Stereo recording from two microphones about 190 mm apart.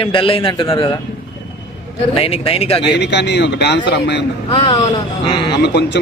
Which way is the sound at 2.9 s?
65° left (ahead or behind).